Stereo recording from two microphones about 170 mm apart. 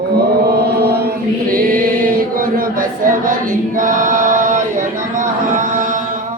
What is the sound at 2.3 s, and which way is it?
Choir, 55° right (ahead or behind).